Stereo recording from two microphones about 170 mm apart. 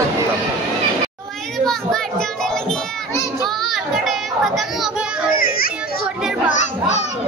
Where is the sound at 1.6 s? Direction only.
5° left (ahead or behind).